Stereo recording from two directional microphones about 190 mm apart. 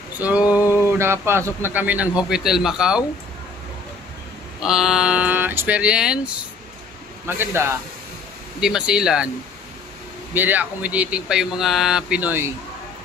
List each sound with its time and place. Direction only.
0.4 s a sound: 20° left (ahead or behind)
0.9 s speech: 15° right (ahead or behind)
4.6 s speech: centre (ahead or behind)
7.2 s speech: 10° right (ahead or behind)
10.3 s speech: 10° right (ahead or behind)